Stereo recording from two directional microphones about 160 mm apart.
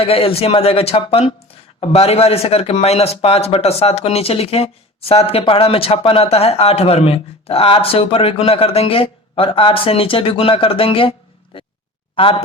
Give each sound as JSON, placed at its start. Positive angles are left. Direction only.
{"t": 0.0, "sound": "speech", "side_deg": 40}
{"t": 11.5, "sound": "a sound", "side_deg": 35}
{"t": 12.1, "sound": "speech", "side_deg": 35}